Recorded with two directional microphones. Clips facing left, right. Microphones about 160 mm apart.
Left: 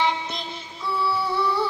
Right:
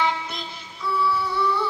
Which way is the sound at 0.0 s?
20° left (ahead or behind).